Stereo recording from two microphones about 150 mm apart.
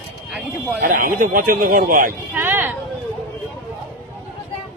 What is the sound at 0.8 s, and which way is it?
Speech, 70° right (ahead or behind).